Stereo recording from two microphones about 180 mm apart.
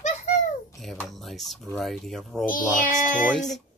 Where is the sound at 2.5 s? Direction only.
50° left (ahead or behind).